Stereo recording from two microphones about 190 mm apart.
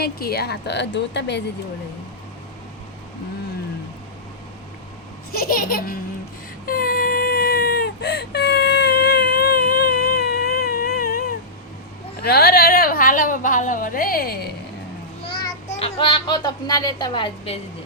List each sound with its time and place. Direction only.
0.0 s speech: 55° left (ahead or behind)
5.3 s a child's voice: 50° left (ahead or behind)
6.7 s whimper: 50° left (ahead or behind)
12.2 s a woman's voice: 55° left (ahead or behind)
15.2 s a child's voice: 30° left (ahead or behind)